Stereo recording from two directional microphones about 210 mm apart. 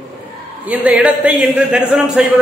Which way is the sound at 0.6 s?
5° right (ahead or behind).